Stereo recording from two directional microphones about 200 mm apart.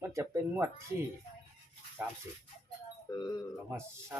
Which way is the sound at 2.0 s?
10° right (ahead or behind).